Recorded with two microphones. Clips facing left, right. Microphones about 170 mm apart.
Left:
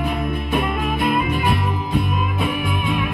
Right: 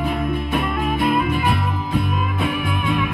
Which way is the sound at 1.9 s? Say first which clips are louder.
Even; 10° left (ahead or behind).